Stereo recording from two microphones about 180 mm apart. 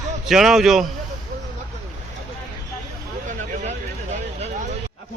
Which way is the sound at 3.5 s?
45° right (ahead or behind).